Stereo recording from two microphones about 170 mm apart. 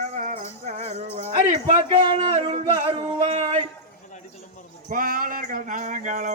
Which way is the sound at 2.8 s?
35° right (ahead or behind).